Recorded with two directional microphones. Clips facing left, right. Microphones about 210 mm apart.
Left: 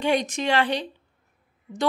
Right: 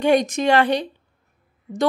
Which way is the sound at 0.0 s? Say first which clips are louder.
Right 6 dB; 45° right (ahead or behind).